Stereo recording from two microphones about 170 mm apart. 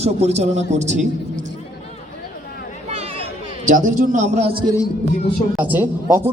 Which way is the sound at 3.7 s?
50° right (ahead or behind).